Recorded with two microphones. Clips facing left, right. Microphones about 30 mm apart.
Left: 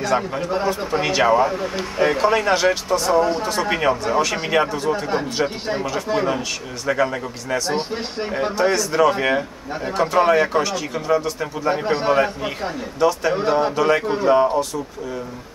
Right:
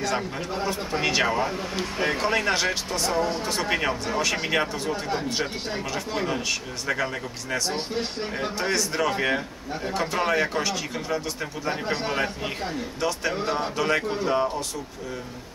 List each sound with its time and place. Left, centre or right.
0.0 s a man's voice: centre
8.5 s a man's voice: centre